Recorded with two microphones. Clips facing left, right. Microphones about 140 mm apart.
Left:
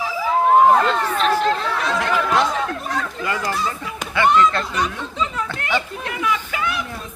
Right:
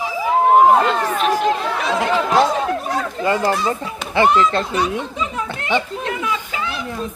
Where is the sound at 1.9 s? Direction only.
20° right (ahead or behind).